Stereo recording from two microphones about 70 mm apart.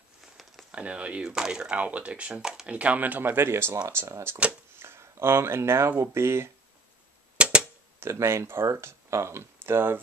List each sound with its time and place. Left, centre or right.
0.4 s a sound: centre
0.7 s speech: centre; by 6.5 s right
7.3 s cap gun: centre
8.0 s speech: right